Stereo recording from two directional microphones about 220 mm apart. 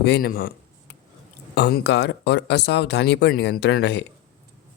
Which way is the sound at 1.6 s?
45° left (ahead or behind).